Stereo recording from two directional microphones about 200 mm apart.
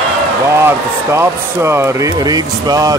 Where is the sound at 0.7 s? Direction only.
10° right (ahead or behind).